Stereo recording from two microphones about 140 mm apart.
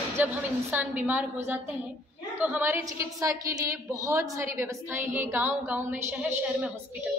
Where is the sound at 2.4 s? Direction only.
10° right (ahead or behind).